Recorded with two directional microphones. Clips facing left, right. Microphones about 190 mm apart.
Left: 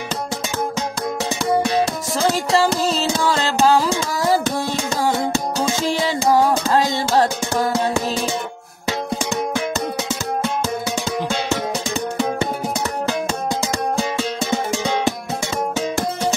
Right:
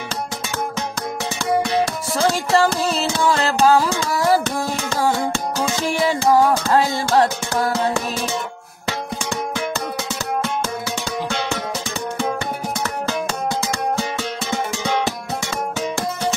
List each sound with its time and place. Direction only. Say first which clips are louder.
1.6 s music: left 1 dB; 25° left (ahead or behind)
2.3 s music: even; 35° left (ahead or behind)
5.7 s music: right 2 dB; 25° left (ahead or behind)
13.9 s music: left 3 dB; 25° left (ahead or behind)